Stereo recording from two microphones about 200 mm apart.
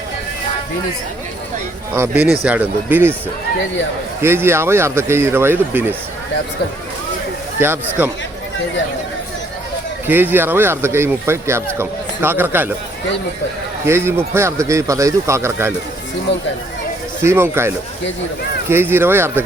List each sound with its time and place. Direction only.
1.9 s speech: 15° right (ahead or behind)
4.2 s speech: 10° right (ahead or behind)
7.6 s speech: 10° right (ahead or behind)
10.1 s speech: 10° right (ahead or behind)
13.8 s speech: 10° right (ahead or behind)
17.2 s speech: 10° right (ahead or behind)
18.7 s speech: 10° right (ahead or behind)